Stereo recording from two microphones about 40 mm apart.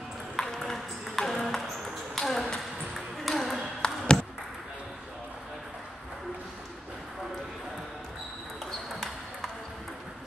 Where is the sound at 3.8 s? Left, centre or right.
Left.